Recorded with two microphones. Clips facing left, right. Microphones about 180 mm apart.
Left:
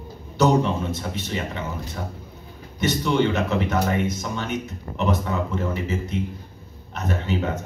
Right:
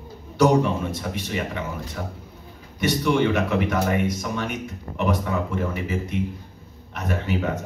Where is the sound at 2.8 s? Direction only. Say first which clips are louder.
Even; 25° left (ahead or behind).